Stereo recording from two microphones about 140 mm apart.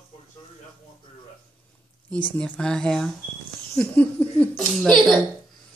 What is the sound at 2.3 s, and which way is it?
Speech, 5° left (ahead or behind).